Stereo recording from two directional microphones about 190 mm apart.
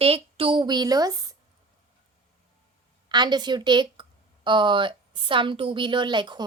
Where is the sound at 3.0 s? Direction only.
25° right (ahead or behind).